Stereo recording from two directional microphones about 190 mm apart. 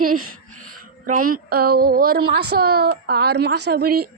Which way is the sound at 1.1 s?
45° right (ahead or behind).